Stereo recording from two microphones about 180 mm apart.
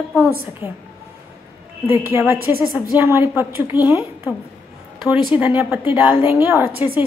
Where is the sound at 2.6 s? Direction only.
20° left (ahead or behind).